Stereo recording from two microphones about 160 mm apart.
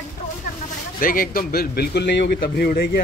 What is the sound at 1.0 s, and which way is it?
A man's voice, 60° left (ahead or behind).